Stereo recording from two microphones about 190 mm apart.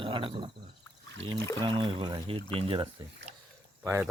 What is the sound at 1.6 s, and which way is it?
Speech, 25° right (ahead or behind).